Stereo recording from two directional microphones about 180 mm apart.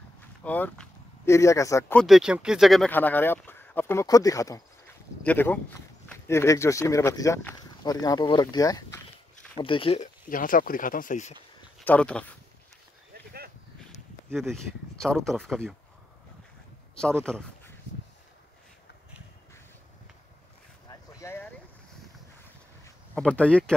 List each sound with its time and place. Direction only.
0.4 s speech: 10° left (ahead or behind)
2.0 s speech: centre (ahead or behind); by 10.0 s 30° left (ahead or behind)
10.3 s speech: 50° left (ahead or behind)
11.8 s speech: 5° left (ahead or behind)
14.5 s speech: centre (ahead or behind)
17.2 s speech: 5° left (ahead or behind)
20.9 s a sound: 15° left (ahead or behind)
23.1 s speech: 5° left (ahead or behind)